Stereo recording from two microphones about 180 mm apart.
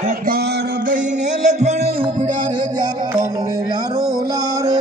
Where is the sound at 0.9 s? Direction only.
40° right (ahead or behind).